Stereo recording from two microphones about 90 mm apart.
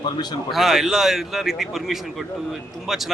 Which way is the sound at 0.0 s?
55° left (ahead or behind).